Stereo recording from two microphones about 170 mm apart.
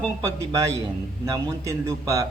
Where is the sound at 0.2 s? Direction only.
20° right (ahead or behind).